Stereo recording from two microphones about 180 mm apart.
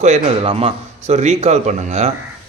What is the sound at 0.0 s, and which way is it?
Speech, 35° right (ahead or behind).